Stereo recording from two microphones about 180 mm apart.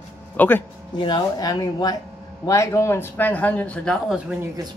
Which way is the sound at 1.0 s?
25° left (ahead or behind).